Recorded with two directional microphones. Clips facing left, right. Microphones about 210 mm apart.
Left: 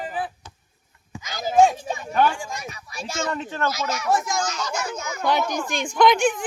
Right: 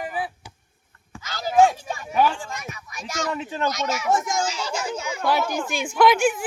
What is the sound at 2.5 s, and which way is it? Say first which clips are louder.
Speech: left 1 dB; 35° left (ahead or behind).